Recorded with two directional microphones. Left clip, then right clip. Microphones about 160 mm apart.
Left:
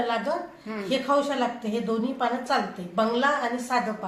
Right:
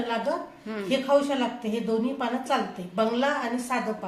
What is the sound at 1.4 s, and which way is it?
Speech, 20° right (ahead or behind).